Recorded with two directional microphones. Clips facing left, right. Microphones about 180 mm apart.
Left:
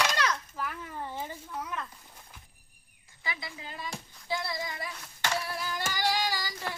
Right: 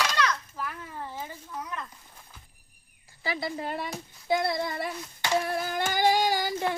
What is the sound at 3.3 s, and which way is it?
Child singing, 50° right (ahead or behind).